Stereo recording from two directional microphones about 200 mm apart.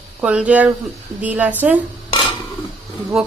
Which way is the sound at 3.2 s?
5° right (ahead or behind).